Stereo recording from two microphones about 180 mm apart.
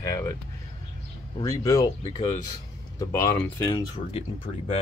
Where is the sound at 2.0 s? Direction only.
30° left (ahead or behind).